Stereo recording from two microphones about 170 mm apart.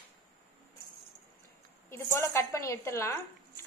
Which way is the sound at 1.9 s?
15° left (ahead or behind).